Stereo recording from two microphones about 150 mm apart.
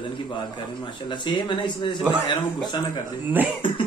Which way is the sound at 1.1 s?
30° left (ahead or behind).